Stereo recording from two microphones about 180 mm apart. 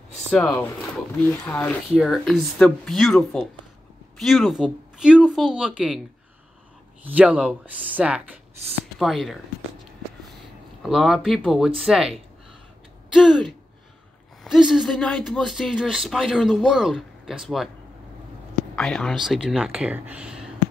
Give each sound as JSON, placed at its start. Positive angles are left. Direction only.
{"t": 0.3, "sound": "speech", "side_deg": 5}
{"t": 7.1, "sound": "speech", "side_deg": -10}
{"t": 10.8, "sound": "speech", "side_deg": 0}
{"t": 18.8, "sound": "speech", "side_deg": 5}